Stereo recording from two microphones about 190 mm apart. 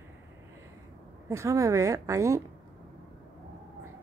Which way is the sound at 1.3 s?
15° right (ahead or behind).